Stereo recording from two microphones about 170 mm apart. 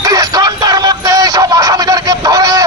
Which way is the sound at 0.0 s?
20° right (ahead or behind).